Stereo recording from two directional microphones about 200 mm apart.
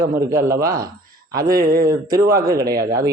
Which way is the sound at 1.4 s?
45° right (ahead or behind).